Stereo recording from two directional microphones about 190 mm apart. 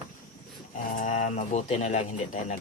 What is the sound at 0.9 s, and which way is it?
Mantra, 40° left (ahead or behind).